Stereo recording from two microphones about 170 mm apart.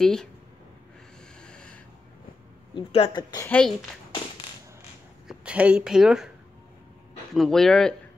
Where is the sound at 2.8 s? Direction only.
30° left (ahead or behind).